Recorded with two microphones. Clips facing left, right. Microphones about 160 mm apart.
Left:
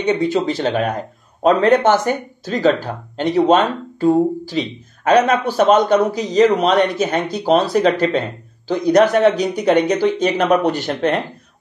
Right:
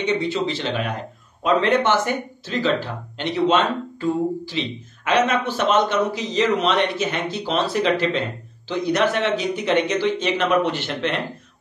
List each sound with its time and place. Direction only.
0.0 s speech: 45° left (ahead or behind)